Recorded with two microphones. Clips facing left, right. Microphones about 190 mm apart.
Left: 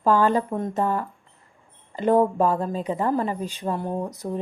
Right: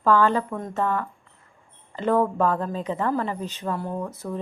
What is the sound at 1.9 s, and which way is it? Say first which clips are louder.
A woman's voice: left 3 dB; 15° left (ahead or behind).